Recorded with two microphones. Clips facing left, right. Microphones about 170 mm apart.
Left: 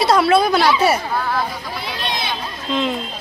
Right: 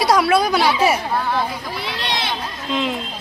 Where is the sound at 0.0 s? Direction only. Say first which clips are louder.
Left 2 dB; 10° right (ahead or behind).